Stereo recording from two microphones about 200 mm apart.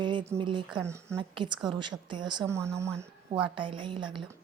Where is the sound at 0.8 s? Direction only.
15° right (ahead or behind).